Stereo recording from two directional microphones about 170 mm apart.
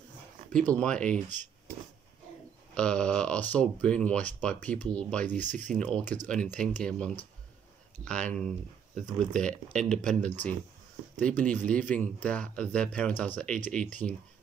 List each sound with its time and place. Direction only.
0.7 s speech: 5° left (ahead or behind)
2.7 s speech: 5° left (ahead or behind)
5.4 s speech: 45° right (ahead or behind)
5.8 s speech: 5° left (ahead or behind)
8.9 s speech: 45° right (ahead or behind)
9.4 s speech: 5° left (ahead or behind)